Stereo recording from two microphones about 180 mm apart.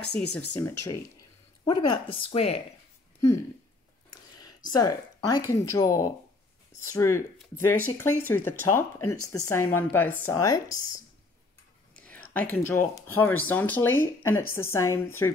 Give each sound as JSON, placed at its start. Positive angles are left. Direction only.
{"t": 0.0, "sound": "speech", "side_deg": 65}
{"t": 0.5, "sound": "speech", "side_deg": 15}
{"t": 1.7, "sound": "speech", "side_deg": 30}
{"t": 4.1, "sound": "a sound", "side_deg": 20}
{"t": 4.7, "sound": "speech", "side_deg": 20}
{"t": 11.9, "sound": "speech", "side_deg": 10}